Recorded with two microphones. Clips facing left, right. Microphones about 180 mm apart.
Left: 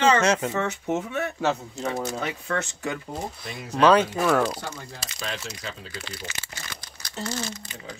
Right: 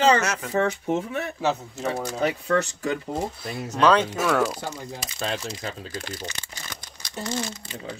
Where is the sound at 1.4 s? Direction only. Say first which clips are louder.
Right 2 dB; centre (ahead or behind).